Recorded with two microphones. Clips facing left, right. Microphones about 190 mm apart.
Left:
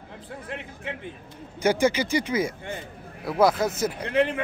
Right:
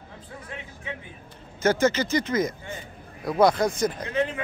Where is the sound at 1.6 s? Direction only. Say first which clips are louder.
Even; 10° left (ahead or behind).